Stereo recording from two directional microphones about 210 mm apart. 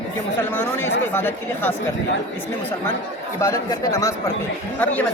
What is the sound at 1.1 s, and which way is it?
Speech, 10° left (ahead or behind).